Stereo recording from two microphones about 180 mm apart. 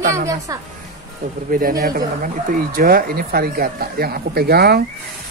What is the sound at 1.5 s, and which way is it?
Speech, 55° right (ahead or behind).